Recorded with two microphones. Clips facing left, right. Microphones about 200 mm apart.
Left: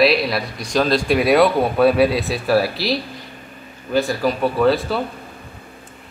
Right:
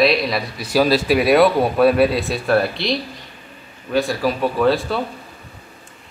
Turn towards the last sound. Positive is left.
turn(degrees=0)  # may be behind; listen again after turning